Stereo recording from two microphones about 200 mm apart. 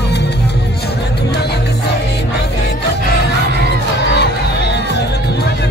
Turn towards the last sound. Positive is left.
turn(degrees=55)  # may be behind; listen again after turning